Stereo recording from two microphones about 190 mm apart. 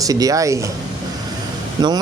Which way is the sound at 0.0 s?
20° right (ahead or behind).